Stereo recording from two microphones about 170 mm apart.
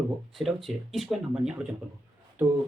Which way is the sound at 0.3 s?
Centre (ahead or behind).